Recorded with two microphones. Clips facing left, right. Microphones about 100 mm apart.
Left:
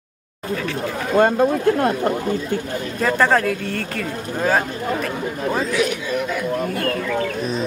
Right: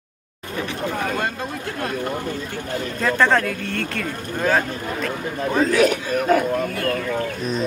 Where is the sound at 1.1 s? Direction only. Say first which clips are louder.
Left 10 dB; 50° left (ahead or behind).